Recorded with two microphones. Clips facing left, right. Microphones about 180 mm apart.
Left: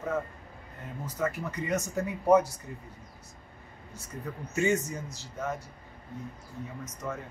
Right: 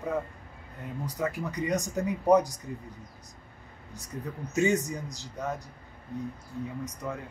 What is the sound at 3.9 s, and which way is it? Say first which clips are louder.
Speech: right 1 dB; 15° right (ahead or behind).